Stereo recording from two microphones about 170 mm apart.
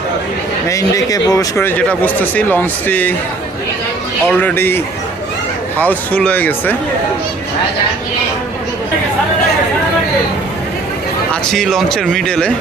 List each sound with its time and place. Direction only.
0.7 s speech: 20° left (ahead or behind)
4.3 s speech: 10° left (ahead or behind)
11.5 s speech: centre (ahead or behind)